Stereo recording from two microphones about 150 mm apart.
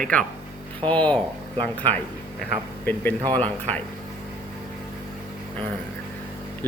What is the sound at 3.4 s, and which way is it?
Speech, 10° left (ahead or behind).